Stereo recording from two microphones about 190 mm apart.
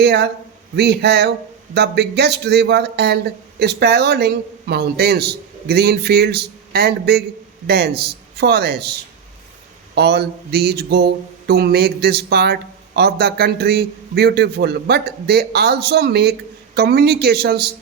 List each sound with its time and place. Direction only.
0.0 s a man's voice: 60° right (ahead or behind)
9.9 s a man's voice: 60° right (ahead or behind)